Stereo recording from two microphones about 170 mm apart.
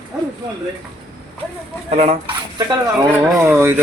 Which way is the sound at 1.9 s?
35° right (ahead or behind).